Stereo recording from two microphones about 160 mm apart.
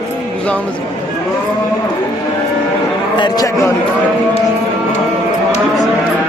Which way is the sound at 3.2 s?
25° left (ahead or behind).